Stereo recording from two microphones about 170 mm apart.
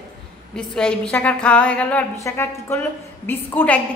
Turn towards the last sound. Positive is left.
turn(degrees=10)  # may be behind; listen again after turning